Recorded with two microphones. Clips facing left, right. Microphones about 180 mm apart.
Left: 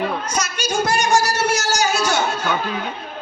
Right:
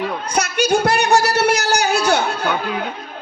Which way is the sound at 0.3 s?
60° right (ahead or behind).